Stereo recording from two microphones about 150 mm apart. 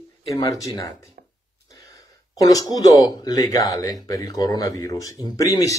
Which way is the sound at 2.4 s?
25° left (ahead or behind).